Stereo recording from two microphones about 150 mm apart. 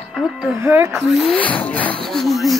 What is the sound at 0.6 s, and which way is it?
Speech, 15° right (ahead or behind).